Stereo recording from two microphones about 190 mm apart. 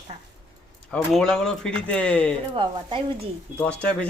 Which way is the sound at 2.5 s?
25° right (ahead or behind).